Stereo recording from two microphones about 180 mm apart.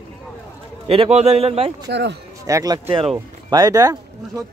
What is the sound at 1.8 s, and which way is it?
Speech, 70° right (ahead or behind).